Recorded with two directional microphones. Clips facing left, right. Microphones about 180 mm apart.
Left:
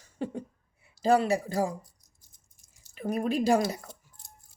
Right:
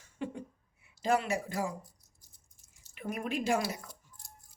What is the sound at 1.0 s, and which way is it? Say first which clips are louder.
Speech: left 6 dB; 35° left (ahead or behind).